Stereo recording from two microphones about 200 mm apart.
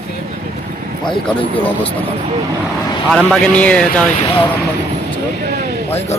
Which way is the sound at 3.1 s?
5° left (ahead or behind).